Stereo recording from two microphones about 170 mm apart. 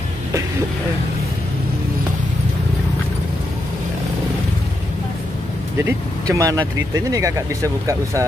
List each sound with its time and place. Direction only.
5.9 s speech: 20° right (ahead or behind)